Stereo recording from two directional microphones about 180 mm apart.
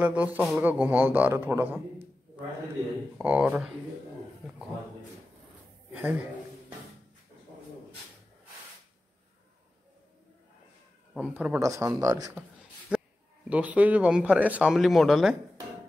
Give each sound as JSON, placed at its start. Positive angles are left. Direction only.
{"t": 0.0, "sound": "speech", "side_deg": -10}
{"t": 3.2, "sound": "speech", "side_deg": -10}
{"t": 5.9, "sound": "a man's voice", "side_deg": -10}
{"t": 11.1, "sound": "speech", "side_deg": -5}
{"t": 11.6, "sound": "speech", "side_deg": -15}
{"t": 12.9, "sound": "a sound", "side_deg": -5}
{"t": 13.5, "sound": "speech", "side_deg": -10}